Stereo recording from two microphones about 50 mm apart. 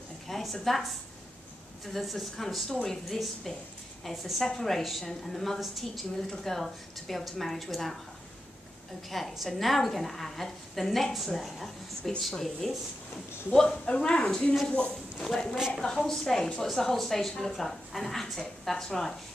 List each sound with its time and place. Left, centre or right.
0.3 s a woman's voice: centre
9.1 s a woman's voice: centre
13.8 s a woman's voice: left